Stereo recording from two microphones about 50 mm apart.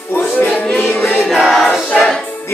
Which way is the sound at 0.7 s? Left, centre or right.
Left.